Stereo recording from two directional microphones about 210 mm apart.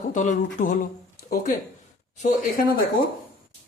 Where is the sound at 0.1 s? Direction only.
35° left (ahead or behind).